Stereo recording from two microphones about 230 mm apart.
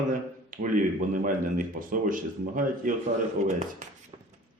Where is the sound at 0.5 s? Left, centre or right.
Right.